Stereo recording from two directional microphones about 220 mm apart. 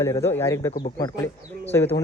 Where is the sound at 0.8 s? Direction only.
40° left (ahead or behind).